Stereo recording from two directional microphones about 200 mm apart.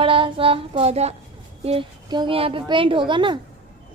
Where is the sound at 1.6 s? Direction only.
30° right (ahead or behind).